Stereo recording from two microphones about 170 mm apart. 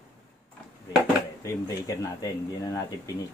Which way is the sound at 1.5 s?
20° left (ahead or behind).